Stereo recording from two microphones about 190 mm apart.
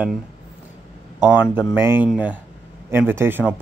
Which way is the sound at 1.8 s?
10° right (ahead or behind).